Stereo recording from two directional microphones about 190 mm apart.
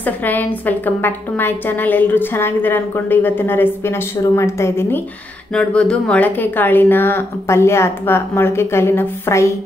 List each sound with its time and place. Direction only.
0.0 s a woman's voice: 10° left (ahead or behind)